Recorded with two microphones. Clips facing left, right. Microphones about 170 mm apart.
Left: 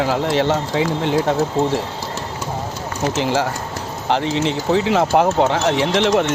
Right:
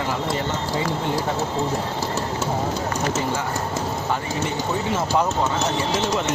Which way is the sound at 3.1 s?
90° left.